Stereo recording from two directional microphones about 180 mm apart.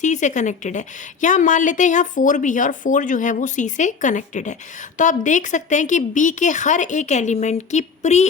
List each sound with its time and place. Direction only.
0.0 s a woman's voice: 40° left (ahead or behind)